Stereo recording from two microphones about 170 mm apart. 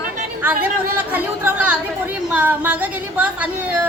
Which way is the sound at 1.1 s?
10° right (ahead or behind).